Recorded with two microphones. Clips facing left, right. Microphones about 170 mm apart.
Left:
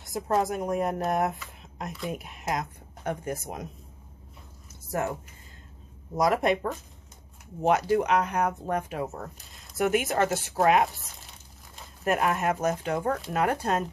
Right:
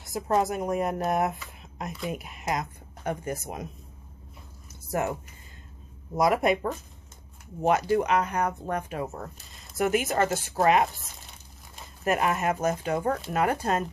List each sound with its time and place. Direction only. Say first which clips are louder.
0.0 s a woman's voice: right 1 dB; centre (ahead or behind)
6.1 s speech: right 1 dB; 5° right (ahead or behind)
12.0 s speech: even; centre (ahead or behind)